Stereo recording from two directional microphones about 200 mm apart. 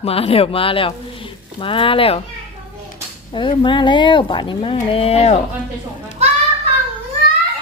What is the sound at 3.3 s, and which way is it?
Speech, 25° left (ahead or behind).